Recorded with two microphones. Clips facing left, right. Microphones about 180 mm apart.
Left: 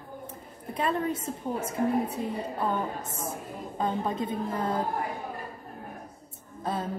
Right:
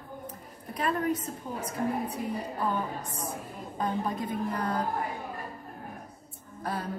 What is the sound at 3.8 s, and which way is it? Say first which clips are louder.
A woman's voice: left 2 dB; 25° left (ahead or behind).